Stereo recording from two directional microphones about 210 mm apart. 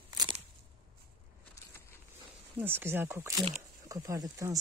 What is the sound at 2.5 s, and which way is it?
Speech, 10° right (ahead or behind).